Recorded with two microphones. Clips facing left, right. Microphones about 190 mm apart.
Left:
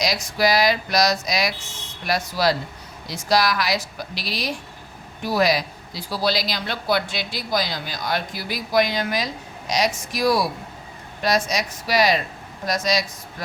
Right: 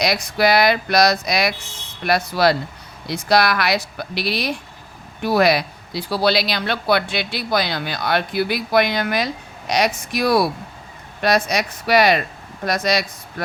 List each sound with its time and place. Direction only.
0.0 s speech: 60° right (ahead or behind)